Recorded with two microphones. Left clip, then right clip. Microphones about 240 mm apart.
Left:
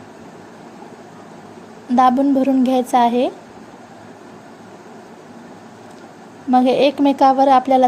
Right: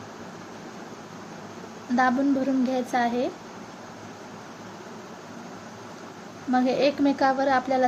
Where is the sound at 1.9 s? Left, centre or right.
Left.